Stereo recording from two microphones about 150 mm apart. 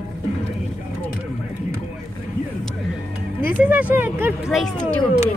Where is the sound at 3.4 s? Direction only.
10° right (ahead or behind).